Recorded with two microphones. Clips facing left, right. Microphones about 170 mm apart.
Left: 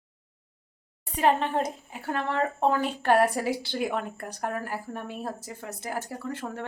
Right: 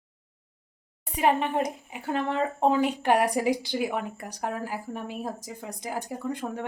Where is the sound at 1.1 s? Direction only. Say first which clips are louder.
Even; 10° right (ahead or behind).